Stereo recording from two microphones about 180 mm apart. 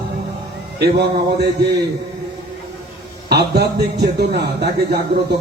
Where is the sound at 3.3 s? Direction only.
65° right (ahead or behind).